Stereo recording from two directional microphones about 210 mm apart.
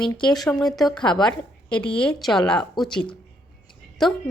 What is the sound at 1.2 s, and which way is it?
A woman's voice, 5° left (ahead or behind).